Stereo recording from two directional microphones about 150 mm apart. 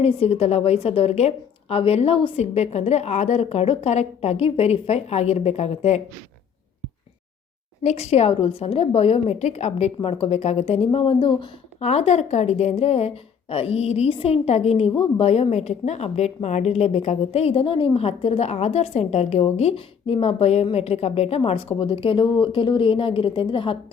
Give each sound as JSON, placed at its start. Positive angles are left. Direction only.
{"t": 0.0, "sound": "a woman's voice", "side_deg": 45}
{"t": 7.9, "sound": "a woman's voice", "side_deg": 45}
{"t": 11.8, "sound": "a woman's voice", "side_deg": 45}